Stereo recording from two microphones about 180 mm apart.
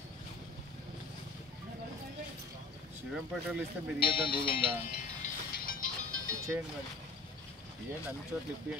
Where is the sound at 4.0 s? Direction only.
30° left (ahead or behind).